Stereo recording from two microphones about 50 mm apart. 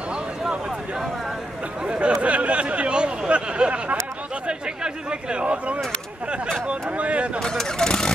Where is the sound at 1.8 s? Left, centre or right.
Right.